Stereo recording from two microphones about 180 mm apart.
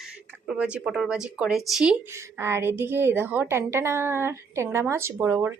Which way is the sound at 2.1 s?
15° right (ahead or behind).